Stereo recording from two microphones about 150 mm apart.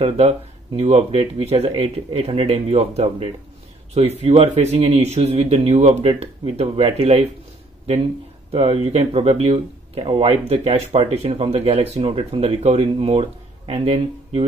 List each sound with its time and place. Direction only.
0.7 s speech: 40° right (ahead or behind)
8.5 s speech: 40° right (ahead or behind)